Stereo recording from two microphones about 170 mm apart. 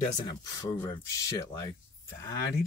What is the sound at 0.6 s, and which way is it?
Speech, 20° left (ahead or behind).